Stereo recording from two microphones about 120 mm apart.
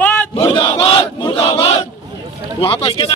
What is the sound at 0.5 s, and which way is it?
Battle cry, 45° left (ahead or behind).